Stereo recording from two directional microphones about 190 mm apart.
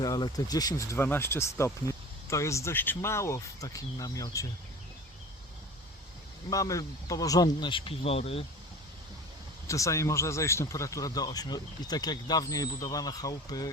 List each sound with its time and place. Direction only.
0.0 s speech: 20° left (ahead or behind)
6.5 s speech: 15° left (ahead or behind)
9.6 s speech: 15° left (ahead or behind)